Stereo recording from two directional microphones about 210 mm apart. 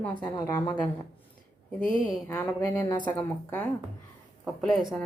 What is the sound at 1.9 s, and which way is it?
A woman's voice, 10° left (ahead or behind).